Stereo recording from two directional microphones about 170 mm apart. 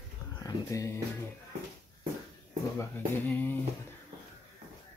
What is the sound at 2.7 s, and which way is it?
Speech, 10° left (ahead or behind).